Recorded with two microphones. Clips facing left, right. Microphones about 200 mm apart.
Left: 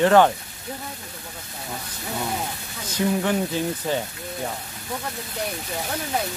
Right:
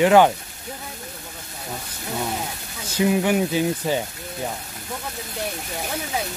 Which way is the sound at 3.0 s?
15° right (ahead or behind).